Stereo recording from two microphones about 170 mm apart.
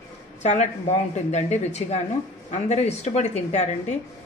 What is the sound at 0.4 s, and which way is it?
A woman's voice, 40° left (ahead or behind).